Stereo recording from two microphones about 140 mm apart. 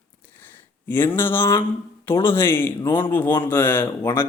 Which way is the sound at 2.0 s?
15° left (ahead or behind).